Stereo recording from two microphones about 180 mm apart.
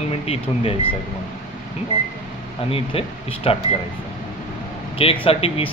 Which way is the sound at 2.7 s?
30° left (ahead or behind).